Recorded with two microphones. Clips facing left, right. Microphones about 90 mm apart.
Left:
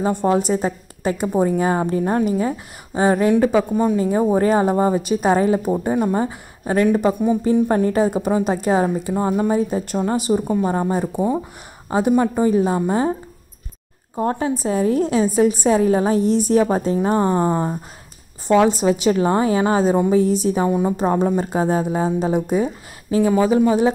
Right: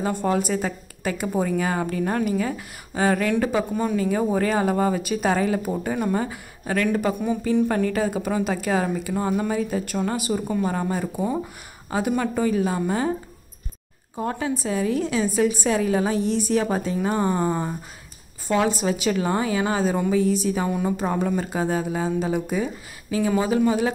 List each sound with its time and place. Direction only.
0.0 s speech: 20° left (ahead or behind)
14.1 s a woman's voice: 35° left (ahead or behind)
18.6 s a woman's voice: 25° left (ahead or behind)